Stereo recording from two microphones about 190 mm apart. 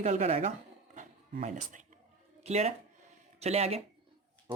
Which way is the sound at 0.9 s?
40° right (ahead or behind).